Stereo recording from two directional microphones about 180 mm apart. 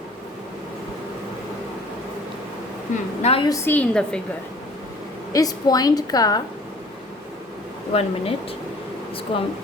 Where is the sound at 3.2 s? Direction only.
35° left (ahead or behind).